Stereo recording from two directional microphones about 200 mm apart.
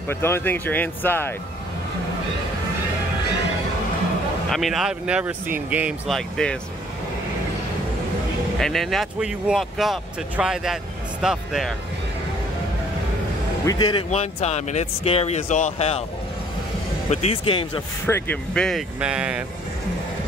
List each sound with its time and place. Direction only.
0.1 s speech: 10° left (ahead or behind)
4.5 s speech: centre (ahead or behind)
8.5 s speech: centre (ahead or behind)
13.7 s speech: 20° left (ahead or behind)
14.1 s speech: 35° left (ahead or behind)
17.1 s speech: 30° left (ahead or behind)
18.0 s speech: 10° left (ahead or behind); by 19.4 s 5° right (ahead or behind)